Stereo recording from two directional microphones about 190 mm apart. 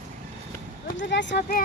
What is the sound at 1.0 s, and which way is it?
Speech, 65° left (ahead or behind).